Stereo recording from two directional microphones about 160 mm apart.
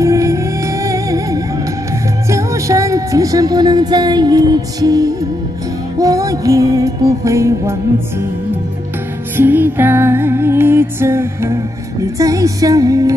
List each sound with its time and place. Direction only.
0.0 s music: 20° right (ahead or behind)
2.3 s speech: 20° right (ahead or behind)
5.9 s music: 20° right (ahead or behind)
9.4 s music: 15° right (ahead or behind)